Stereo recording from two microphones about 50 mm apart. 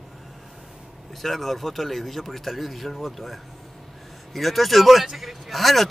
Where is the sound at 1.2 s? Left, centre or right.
Centre.